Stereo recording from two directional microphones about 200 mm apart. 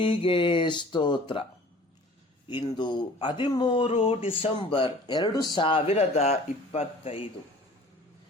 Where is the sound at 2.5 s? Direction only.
25° left (ahead or behind).